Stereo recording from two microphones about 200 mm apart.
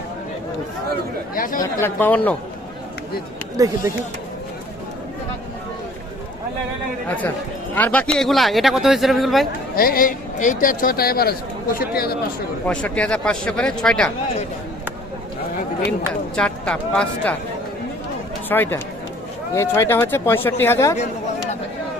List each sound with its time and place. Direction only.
1.4 s speech: 45° left (ahead or behind)
1.6 s speech: 10° left (ahead or behind)
3.6 s speech: 15° right (ahead or behind)
7.8 s a man's voice: 10° left (ahead or behind)
9.7 s speech: 45° left (ahead or behind)
12.6 s a man's voice: 5° left (ahead or behind)
16.3 s a man's voice: 5° left (ahead or behind)
18.4 s speech: 10° left (ahead or behind)